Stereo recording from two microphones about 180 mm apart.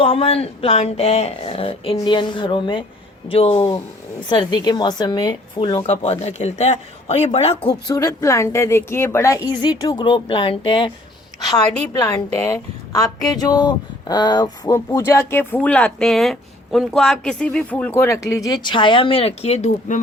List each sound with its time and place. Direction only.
0.0 s speech: 30° left (ahead or behind)
7.9 s speech: 20° left (ahead or behind)
11.8 s a woman's voice: 15° left (ahead or behind); by 20.0 s 35° left (ahead or behind)